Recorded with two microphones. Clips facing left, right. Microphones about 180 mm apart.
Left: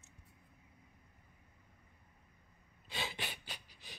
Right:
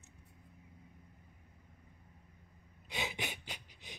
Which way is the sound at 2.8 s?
20° right (ahead or behind).